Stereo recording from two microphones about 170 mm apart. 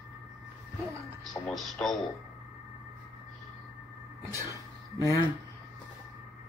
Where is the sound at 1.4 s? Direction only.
Centre (ahead or behind).